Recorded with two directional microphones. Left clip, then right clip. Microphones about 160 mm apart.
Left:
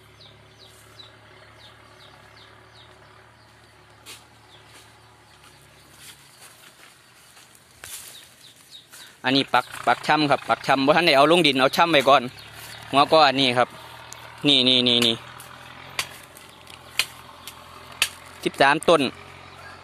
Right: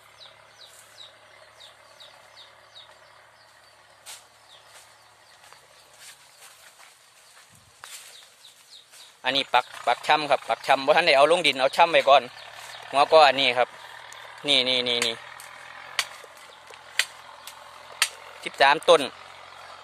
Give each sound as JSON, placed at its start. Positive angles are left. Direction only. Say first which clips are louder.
{"t": 9.2, "sound": "speech", "louder": "left 2 dB", "side_deg": -10}
{"t": 18.4, "sound": "speech", "louder": "left 1 dB", "side_deg": 0}
{"t": 19.1, "sound": "vehicle", "louder": "left 1 dB", "side_deg": 20}